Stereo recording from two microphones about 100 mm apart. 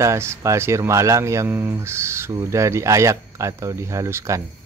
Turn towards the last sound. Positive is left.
turn(degrees=-30)  # may be behind; listen again after turning